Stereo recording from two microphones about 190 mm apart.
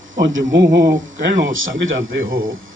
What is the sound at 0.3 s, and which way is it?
Speech, 70° right (ahead or behind).